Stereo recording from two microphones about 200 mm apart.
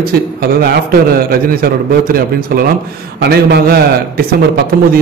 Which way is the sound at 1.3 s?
50° right (ahead or behind).